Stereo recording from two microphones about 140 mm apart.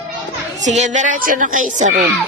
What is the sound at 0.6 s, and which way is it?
A woman's voice, 60° right (ahead or behind).